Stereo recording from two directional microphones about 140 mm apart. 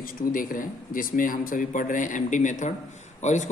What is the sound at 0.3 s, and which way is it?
A man's voice, 75° left (ahead or behind).